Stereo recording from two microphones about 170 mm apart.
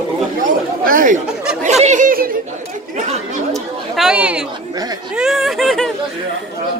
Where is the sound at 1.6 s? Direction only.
40° right (ahead or behind).